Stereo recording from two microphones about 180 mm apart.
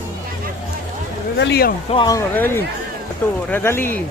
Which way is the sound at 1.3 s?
70° left (ahead or behind).